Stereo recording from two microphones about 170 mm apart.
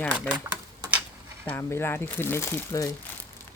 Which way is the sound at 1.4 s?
10° left (ahead or behind).